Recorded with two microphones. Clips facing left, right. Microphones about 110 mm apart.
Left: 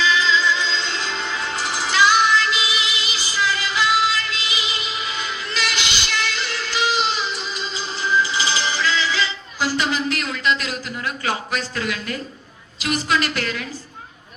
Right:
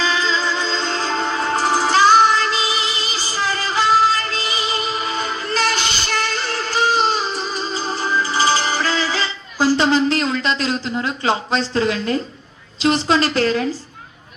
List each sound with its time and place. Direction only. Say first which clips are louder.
0.0 s music: left 1 dB; 40° right (ahead or behind)
12.8 s a woman's voice: right 5 dB; 30° right (ahead or behind)